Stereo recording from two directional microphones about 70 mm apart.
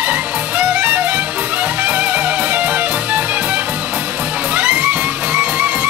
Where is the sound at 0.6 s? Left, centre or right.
Centre.